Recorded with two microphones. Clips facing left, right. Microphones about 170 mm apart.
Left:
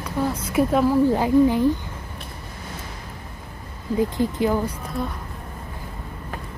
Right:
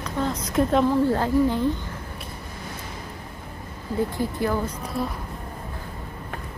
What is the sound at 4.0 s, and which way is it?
Speech, 20° left (ahead or behind).